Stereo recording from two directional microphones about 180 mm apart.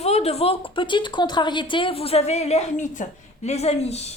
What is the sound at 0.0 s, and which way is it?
Speech, 35° left (ahead or behind).